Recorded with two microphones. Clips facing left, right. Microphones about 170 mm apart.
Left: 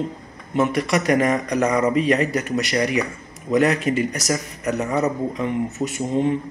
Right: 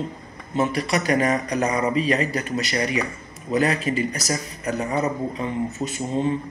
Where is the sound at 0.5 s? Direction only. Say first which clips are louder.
Left 3 dB; 70° left (ahead or behind).